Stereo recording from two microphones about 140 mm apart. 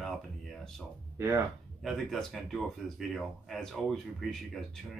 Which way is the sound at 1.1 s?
20° right (ahead or behind).